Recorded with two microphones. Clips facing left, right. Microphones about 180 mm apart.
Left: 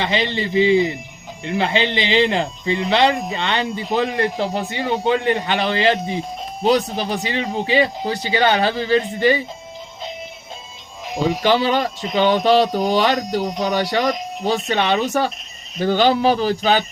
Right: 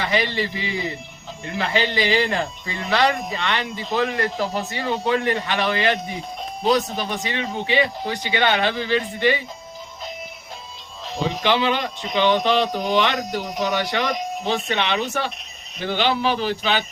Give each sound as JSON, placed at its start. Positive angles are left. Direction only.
{"t": 0.0, "sound": "a man's voice", "side_deg": 25}
{"t": 11.4, "sound": "a man's voice", "side_deg": 40}